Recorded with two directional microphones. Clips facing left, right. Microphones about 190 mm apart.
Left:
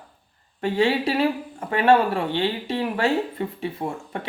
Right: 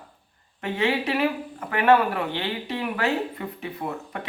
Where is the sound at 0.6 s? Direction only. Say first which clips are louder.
Left 4 dB; 30° left (ahead or behind).